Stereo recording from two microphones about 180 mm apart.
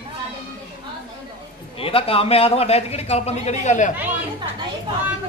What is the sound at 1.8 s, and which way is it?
A man's voice, 30° left (ahead or behind).